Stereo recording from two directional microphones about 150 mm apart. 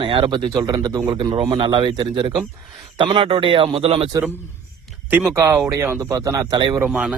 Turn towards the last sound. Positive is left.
turn(degrees=-5)  # may be behind; listen again after turning